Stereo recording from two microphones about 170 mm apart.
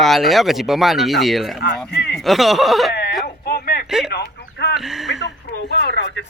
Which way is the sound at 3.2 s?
60° left (ahead or behind).